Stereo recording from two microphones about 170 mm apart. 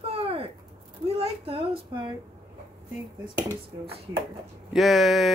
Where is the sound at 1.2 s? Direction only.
35° right (ahead or behind).